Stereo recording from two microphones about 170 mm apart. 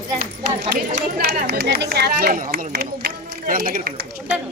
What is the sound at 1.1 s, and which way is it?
Speech, 55° right (ahead or behind).